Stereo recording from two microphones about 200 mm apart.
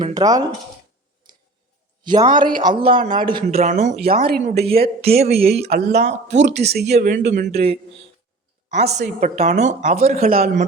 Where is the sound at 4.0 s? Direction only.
50° right (ahead or behind).